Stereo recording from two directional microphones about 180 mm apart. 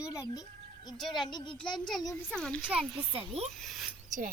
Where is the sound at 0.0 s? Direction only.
20° left (ahead or behind).